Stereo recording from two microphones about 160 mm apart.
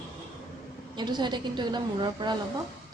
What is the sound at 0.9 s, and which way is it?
A woman's voice, 25° right (ahead or behind).